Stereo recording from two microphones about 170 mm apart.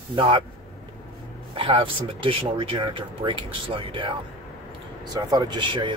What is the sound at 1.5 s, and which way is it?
Speech, 30° right (ahead or behind).